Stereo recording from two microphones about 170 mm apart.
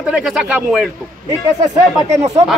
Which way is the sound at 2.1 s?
40° right (ahead or behind).